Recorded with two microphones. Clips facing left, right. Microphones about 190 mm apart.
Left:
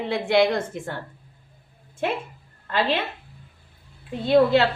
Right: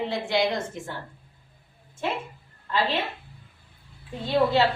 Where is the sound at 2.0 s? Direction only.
60° left (ahead or behind).